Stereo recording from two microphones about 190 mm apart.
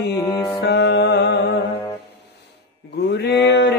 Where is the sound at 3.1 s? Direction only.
65° left (ahead or behind).